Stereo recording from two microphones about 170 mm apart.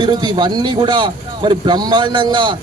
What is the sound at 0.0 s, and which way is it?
A man's voice, 25° right (ahead or behind).